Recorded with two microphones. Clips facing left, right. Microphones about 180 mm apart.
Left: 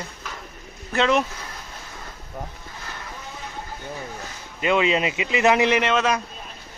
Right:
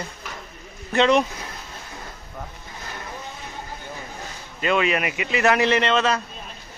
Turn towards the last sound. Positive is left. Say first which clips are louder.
# even
turn(degrees=10)  # may be behind; listen again after turning